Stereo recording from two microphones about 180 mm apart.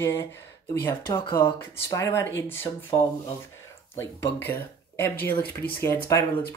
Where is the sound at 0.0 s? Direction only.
15° left (ahead or behind).